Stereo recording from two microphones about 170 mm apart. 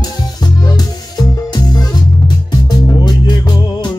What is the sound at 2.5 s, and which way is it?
Music, 25° left (ahead or behind).